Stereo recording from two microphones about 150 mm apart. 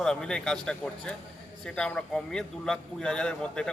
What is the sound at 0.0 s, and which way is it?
A man's voice, 5° left (ahead or behind).